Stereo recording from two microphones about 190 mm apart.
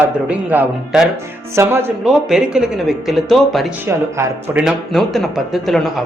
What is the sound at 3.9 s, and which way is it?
Speech, 15° right (ahead or behind).